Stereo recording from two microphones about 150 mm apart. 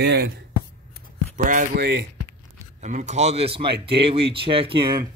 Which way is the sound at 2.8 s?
50° right (ahead or behind).